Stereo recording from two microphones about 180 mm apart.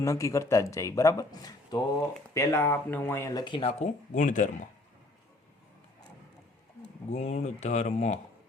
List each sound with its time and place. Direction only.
0.0 s speech: 15° left (ahead or behind); by 4.5 s 45° left (ahead or behind)
7.1 s speech: 40° left (ahead or behind)